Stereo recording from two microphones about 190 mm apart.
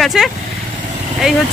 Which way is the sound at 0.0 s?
Centre (ahead or behind).